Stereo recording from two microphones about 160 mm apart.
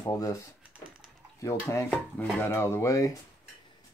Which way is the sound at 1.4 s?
20° left (ahead or behind).